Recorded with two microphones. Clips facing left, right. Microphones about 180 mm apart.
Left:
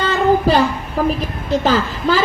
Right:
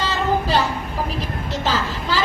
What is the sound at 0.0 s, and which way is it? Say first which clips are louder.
Child singing: left 7 dB; 55° left (ahead or behind).